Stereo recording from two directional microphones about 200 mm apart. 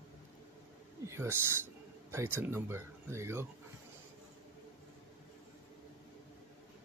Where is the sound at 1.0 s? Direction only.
10° right (ahead or behind).